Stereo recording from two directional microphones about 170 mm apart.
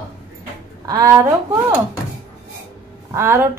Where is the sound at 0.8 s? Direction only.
20° right (ahead or behind).